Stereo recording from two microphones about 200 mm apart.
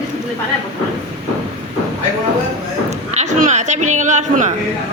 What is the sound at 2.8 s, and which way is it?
A man's voice, 35° right (ahead or behind).